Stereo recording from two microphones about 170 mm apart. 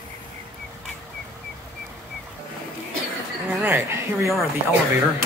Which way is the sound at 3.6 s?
10° right (ahead or behind).